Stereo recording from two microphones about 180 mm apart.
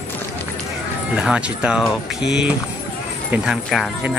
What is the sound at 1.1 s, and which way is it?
Speech, 5° right (ahead or behind).